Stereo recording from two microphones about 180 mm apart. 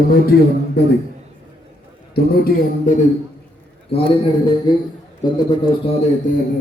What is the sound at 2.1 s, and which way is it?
Speech, 60° left (ahead or behind).